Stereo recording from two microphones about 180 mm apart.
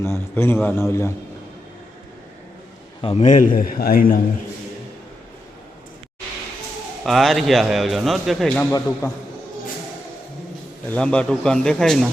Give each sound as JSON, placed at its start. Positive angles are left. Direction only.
{"t": 0.0, "sound": "a man's voice", "side_deg": 15}
{"t": 3.0, "sound": "a man's voice", "side_deg": 35}
{"t": 7.0, "sound": "speech", "side_deg": 0}
{"t": 9.0, "sound": "a man's voice", "side_deg": 20}
{"t": 10.8, "sound": "speech", "side_deg": 5}